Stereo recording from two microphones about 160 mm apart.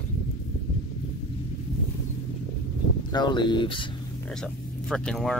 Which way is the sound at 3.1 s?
30° left (ahead or behind).